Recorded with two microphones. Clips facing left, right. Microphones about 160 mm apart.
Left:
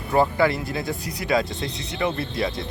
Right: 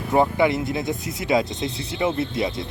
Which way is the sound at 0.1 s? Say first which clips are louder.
Right 1 dB; 20° right (ahead or behind).